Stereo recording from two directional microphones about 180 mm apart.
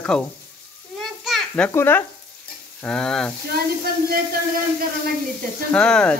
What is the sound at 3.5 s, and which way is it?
Speech, 55° right (ahead or behind).